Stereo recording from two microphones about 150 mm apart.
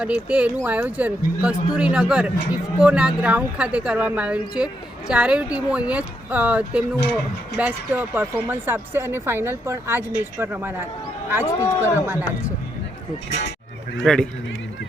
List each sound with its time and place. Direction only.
0.0 s speech: 5° right (ahead or behind)
11.6 s a man's voice: 20° left (ahead or behind)
12.0 s speech: 15° right (ahead or behind)
14.0 s speech: 5° left (ahead or behind)